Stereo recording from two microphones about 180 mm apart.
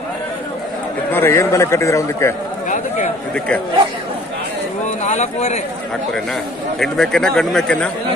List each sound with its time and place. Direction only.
1.1 s a man's voice: 15° left (ahead or behind)
3.3 s speech: 5° left (ahead or behind)
4.8 s speech: 40° left (ahead or behind)
6.8 s speech: centre (ahead or behind)